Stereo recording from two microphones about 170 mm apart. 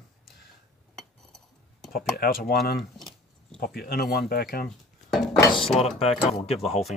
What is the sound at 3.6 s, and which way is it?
Speech, 65° left (ahead or behind).